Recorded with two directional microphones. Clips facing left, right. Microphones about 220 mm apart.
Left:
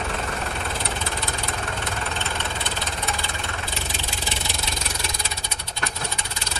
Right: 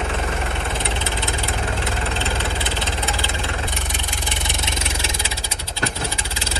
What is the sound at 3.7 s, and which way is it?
Vehicle, 15° right (ahead or behind).